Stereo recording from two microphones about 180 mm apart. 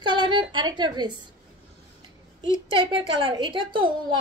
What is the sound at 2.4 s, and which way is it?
A woman's voice, 30° right (ahead or behind).